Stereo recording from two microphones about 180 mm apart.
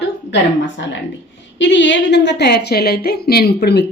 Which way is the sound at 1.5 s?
90° left.